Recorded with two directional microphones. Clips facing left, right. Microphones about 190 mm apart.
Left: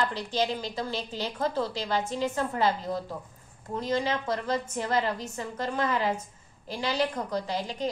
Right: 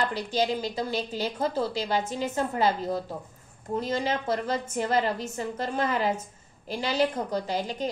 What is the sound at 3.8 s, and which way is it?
A woman's voice, 25° right (ahead or behind).